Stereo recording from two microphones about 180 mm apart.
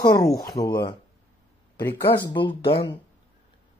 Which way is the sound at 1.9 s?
15° left (ahead or behind).